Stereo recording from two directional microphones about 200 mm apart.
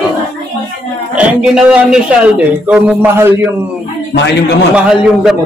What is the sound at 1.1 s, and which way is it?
A man's voice, 5° right (ahead or behind).